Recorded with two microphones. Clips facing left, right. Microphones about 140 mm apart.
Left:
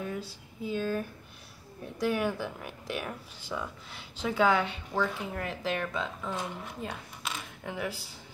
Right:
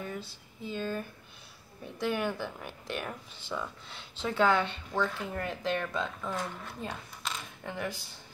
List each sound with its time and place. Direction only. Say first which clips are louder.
0.7 s speech: left 3 dB; 5° left (ahead or behind)
6.3 s speech: even; 15° left (ahead or behind)
6.8 s a sound: right 1 dB; 5° left (ahead or behind)